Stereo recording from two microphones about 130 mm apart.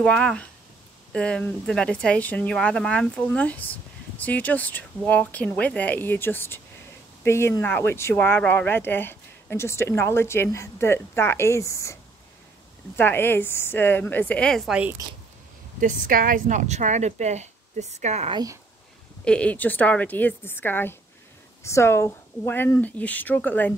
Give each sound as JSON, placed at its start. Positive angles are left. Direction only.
{"t": 0.0, "sound": "speech", "side_deg": 5}
{"t": 15.8, "sound": "speech", "side_deg": -90}
{"t": 18.3, "sound": "speech", "side_deg": -30}
{"t": 19.2, "sound": "speech", "side_deg": 10}